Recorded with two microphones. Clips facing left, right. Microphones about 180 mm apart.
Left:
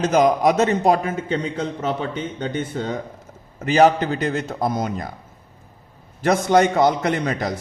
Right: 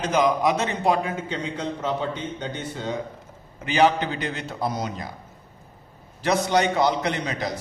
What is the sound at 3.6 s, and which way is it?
A man's voice, 40° left (ahead or behind).